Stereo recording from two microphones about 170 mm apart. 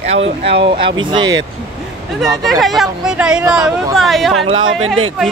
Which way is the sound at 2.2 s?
Centre (ahead or behind).